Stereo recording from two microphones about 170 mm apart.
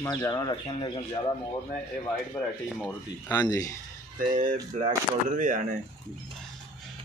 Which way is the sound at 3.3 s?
20° left (ahead or behind).